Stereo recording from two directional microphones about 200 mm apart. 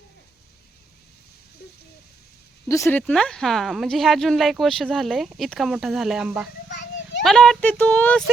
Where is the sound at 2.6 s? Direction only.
15° left (ahead or behind).